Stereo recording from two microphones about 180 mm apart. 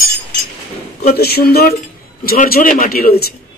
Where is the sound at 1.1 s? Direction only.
60° left (ahead or behind).